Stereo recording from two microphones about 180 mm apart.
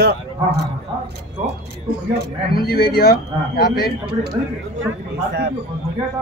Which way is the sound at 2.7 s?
60° left (ahead or behind).